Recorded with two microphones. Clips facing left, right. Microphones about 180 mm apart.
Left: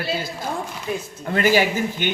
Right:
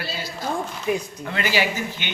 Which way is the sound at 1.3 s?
45° left (ahead or behind).